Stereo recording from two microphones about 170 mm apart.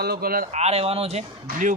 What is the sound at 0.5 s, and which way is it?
Speech, 40° right (ahead or behind).